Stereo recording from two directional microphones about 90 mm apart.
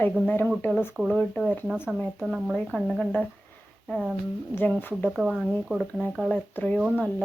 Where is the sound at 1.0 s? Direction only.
15° right (ahead or behind); by 3.2 s 5° left (ahead or behind).